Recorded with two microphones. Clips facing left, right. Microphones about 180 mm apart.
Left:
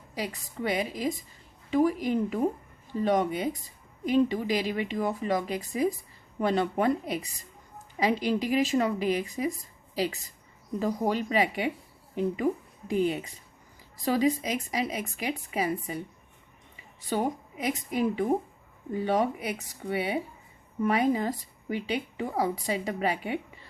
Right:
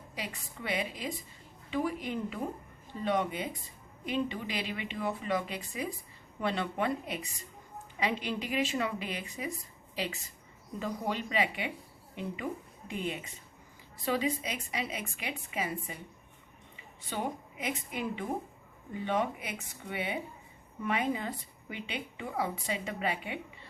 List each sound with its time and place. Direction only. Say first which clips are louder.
0.1 s speech: left 7 dB; 40° left (ahead or behind)
12.9 s speech: left 10 dB; 35° left (ahead or behind)
17.1 s speech: left 7 dB; 40° left (ahead or behind)